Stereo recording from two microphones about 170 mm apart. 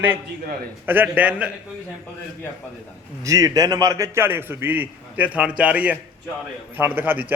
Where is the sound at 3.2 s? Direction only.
20° right (ahead or behind).